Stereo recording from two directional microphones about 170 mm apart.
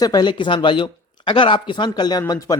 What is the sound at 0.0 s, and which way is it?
Speech, 25° left (ahead or behind).